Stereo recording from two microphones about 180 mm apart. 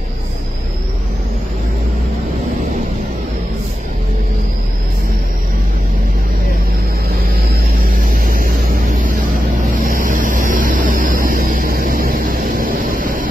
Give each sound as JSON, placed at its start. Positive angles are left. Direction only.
{"t": 7.8, "sound": "vehicle", "side_deg": -50}